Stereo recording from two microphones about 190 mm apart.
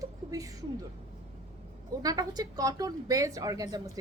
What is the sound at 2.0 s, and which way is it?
A woman's voice, 20° right (ahead or behind).